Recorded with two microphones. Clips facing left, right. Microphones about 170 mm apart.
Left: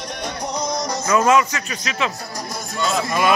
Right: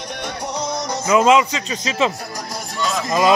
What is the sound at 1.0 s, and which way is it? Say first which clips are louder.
Speech: right 3 dB; 15° right (ahead or behind).